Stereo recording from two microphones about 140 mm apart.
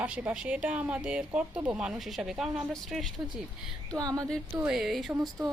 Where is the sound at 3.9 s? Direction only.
25° right (ahead or behind).